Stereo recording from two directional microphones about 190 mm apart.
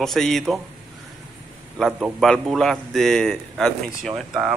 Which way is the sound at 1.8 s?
Centre (ahead or behind).